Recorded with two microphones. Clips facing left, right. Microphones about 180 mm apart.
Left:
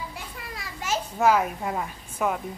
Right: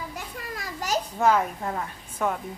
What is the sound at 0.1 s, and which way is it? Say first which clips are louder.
Children playing: right 3 dB; 40° right (ahead or behind).